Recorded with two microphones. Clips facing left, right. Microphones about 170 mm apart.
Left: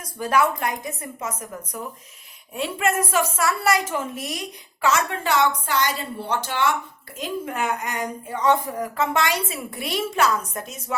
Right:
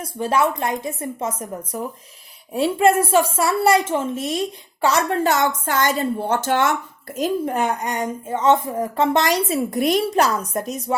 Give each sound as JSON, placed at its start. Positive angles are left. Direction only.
{"t": 0.0, "sound": "a woman's voice", "side_deg": -25}
{"t": 7.2, "sound": "a woman's voice", "side_deg": -40}